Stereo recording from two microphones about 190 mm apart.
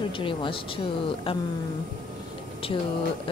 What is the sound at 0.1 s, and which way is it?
A woman's voice, 25° left (ahead or behind).